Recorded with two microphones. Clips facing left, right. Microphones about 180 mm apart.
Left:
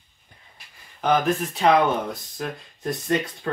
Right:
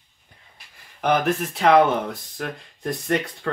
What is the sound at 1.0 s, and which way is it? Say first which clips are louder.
Speech: even; 65° right (ahead or behind).